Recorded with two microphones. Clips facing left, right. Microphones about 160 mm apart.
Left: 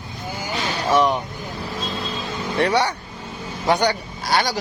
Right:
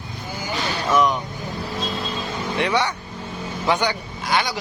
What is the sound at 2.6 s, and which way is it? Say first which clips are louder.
Speech: left 3 dB; 35° left (ahead or behind).